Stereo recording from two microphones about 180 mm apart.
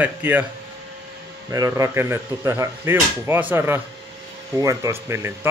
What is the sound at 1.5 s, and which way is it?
Speech, 15° right (ahead or behind).